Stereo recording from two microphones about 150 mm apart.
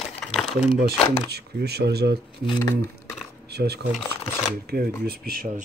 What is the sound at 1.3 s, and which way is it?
Speech, 90° right.